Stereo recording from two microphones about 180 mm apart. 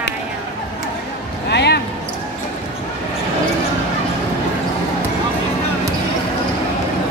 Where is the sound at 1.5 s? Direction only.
70° left (ahead or behind).